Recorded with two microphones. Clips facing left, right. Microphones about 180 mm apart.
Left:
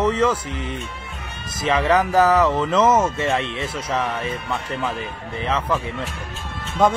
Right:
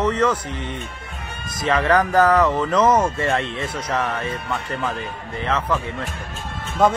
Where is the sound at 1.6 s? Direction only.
5° left (ahead or behind).